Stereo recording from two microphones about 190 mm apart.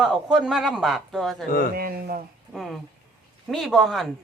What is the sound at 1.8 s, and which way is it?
Speech, 50° right (ahead or behind).